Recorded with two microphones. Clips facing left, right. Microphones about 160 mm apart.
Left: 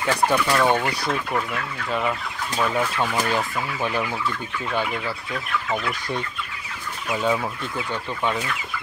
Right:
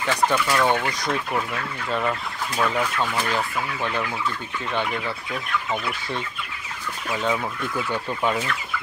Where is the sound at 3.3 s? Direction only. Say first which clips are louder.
Left 1 dB; 15° left (ahead or behind).